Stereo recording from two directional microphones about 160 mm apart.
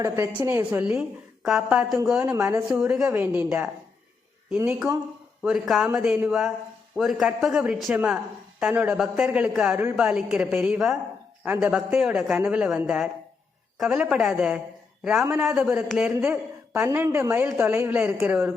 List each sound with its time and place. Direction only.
0.0 s a woman's voice: 15° right (ahead or behind)
2.3 s a woman's voice: 15° right (ahead or behind)
2.6 s a woman's voice: 5° right (ahead or behind)
16.0 s a woman's voice: 15° right (ahead or behind)